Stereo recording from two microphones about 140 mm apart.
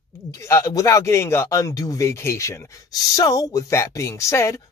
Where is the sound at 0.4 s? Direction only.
20° left (ahead or behind).